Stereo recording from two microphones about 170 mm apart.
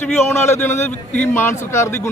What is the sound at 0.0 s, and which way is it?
A man's voice, 15° left (ahead or behind).